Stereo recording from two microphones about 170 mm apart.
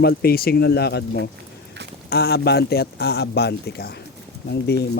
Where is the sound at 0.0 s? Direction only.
65° left (ahead or behind).